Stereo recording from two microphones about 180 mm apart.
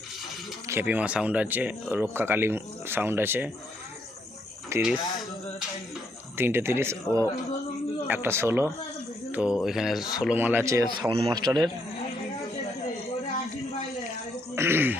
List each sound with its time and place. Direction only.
0.7 s speech: 10° right (ahead or behind)
4.7 s speech: 15° right (ahead or behind)
6.3 s a man's voice: 10° right (ahead or behind)
14.5 s speech: 15° right (ahead or behind)